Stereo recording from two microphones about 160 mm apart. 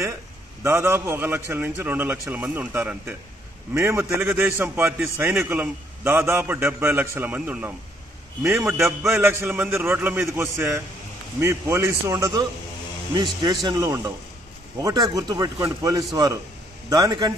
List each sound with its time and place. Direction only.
0.7 s a man's voice: 15° right (ahead or behind)